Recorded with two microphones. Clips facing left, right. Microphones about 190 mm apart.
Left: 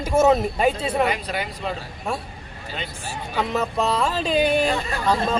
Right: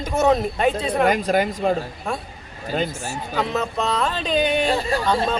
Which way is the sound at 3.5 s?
10° left (ahead or behind).